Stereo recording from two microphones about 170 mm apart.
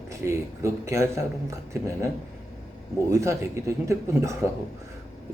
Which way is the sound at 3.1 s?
15° right (ahead or behind).